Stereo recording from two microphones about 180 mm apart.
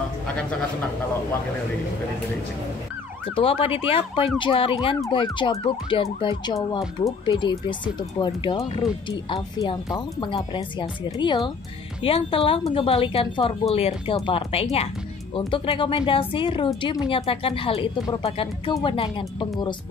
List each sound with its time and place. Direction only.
3.3 s a woman's voice: 30° left (ahead or behind)